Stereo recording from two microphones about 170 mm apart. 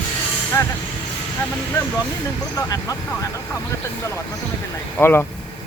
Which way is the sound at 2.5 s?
20° left (ahead or behind).